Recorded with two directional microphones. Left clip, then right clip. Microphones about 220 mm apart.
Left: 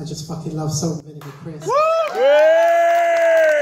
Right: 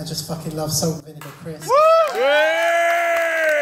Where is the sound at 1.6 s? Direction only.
15° right (ahead or behind).